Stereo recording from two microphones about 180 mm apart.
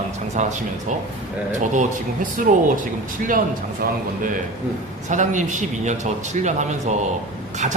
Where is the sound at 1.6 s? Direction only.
45° right (ahead or behind).